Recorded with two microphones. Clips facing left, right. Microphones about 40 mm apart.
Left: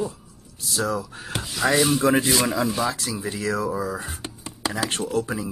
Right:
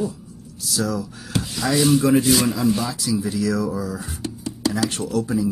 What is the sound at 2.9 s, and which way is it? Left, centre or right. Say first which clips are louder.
Speech: right 6 dB; left.